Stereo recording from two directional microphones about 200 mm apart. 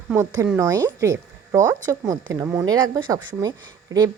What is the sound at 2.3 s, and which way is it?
Speech, 15° right (ahead or behind).